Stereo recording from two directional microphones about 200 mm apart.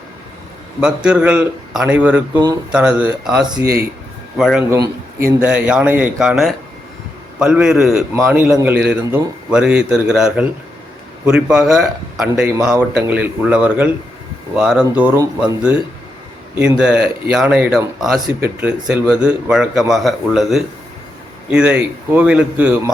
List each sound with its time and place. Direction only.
0.8 s a man's voice: 5° right (ahead or behind)
3.4 s speech: 20° right (ahead or behind)
4.4 s speech: centre (ahead or behind)
4.8 s a man's voice: 15° right (ahead or behind)
16.6 s a man's voice: 5° right (ahead or behind)